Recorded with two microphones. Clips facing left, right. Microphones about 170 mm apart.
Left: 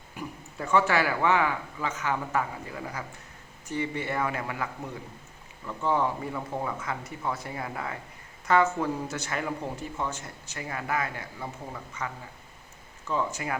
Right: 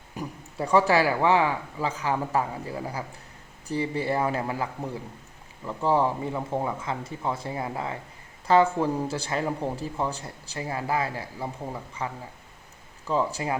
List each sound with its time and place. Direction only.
0.2 s speech: 35° right (ahead or behind)